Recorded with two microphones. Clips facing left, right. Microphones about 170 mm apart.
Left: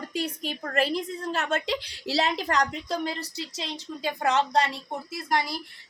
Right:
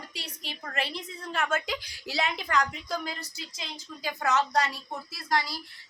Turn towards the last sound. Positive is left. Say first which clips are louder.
# left 2 dB
turn(degrees=20)  # may be behind; listen again after turning